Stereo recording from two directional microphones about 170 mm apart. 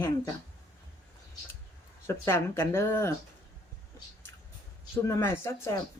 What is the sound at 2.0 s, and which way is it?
Speech, 15° left (ahead or behind).